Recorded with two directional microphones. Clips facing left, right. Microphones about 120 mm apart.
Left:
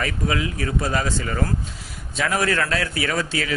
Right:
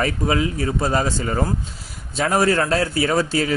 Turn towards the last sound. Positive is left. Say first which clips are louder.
# right 5 dB
turn(degrees=-35)  # may be behind; listen again after turning